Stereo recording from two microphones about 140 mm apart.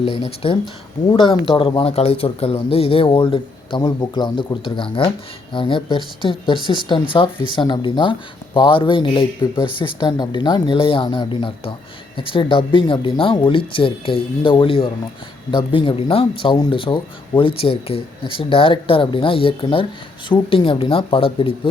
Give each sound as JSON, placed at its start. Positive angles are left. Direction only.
{"t": 0.0, "sound": "speech", "side_deg": 40}